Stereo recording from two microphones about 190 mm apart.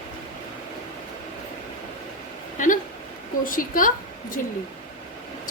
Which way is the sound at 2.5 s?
45° left (ahead or behind).